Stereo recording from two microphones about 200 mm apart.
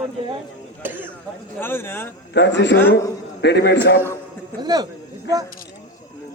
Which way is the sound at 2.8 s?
10° left (ahead or behind).